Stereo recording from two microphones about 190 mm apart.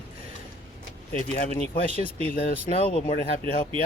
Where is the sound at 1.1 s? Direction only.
40° left (ahead or behind).